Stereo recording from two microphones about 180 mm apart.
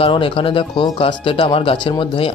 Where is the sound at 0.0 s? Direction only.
30° left (ahead or behind).